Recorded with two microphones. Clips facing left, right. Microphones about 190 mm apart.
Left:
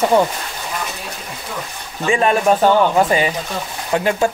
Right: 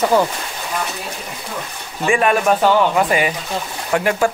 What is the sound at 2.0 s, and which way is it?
Speech, 25° left (ahead or behind).